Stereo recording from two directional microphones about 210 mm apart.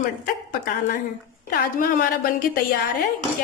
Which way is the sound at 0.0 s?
40° left (ahead or behind).